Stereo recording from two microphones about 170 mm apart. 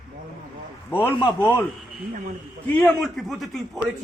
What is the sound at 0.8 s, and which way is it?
Speech, 10° left (ahead or behind).